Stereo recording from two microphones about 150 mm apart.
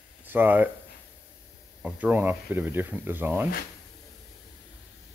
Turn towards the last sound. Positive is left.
turn(degrees=-10)  # may be behind; listen again after turning